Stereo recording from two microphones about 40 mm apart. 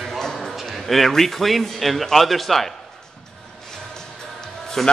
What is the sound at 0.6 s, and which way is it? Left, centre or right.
A man's voice, centre.